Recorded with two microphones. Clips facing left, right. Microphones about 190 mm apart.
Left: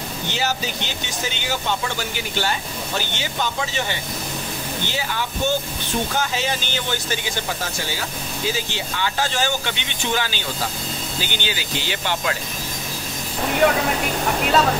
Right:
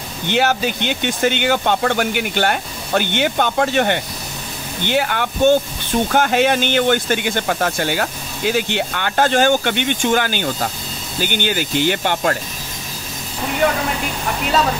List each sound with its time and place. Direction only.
0.3 s speech: 60° right (ahead or behind)